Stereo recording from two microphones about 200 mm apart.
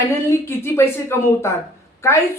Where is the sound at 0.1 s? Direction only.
15° left (ahead or behind).